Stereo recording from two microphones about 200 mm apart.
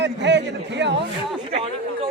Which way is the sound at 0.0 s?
60° right (ahead or behind).